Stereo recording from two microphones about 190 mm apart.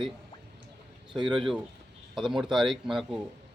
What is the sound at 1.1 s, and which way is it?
Speech, 25° right (ahead or behind).